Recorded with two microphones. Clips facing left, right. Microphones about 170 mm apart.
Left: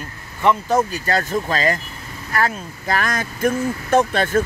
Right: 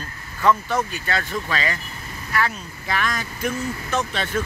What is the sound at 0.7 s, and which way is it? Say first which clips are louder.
Speech: left 6 dB; 40° left (ahead or behind).